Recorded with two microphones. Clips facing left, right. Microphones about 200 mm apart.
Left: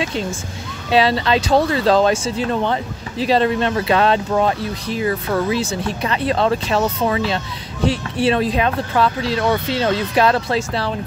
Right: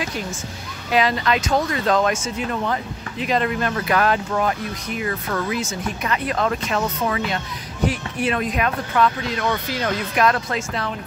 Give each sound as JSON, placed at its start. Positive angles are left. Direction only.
{"t": 0.0, "sound": "speech", "side_deg": 25}